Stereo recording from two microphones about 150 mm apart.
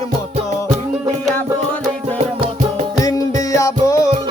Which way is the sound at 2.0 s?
45° right (ahead or behind).